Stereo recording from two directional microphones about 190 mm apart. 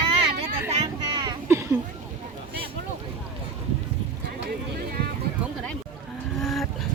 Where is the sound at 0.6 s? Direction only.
20° right (ahead or behind).